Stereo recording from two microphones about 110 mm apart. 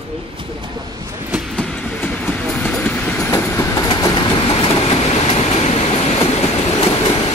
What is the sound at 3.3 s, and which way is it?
Train, 25° left (ahead or behind).